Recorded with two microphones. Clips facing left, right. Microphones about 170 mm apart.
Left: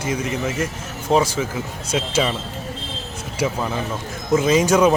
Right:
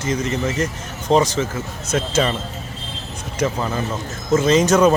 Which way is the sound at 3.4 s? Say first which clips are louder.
Right 1 dB; 5° left (ahead or behind).